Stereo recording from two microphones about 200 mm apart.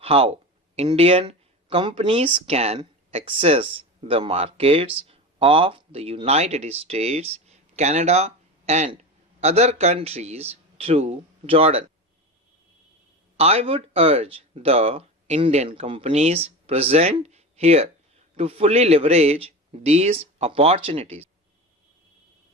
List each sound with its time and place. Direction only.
0.0 s speech: 30° right (ahead or behind)
13.3 s speech: 30° right (ahead or behind)